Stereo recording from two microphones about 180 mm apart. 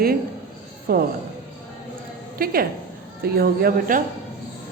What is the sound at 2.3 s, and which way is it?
A woman's voice, 55° right (ahead or behind).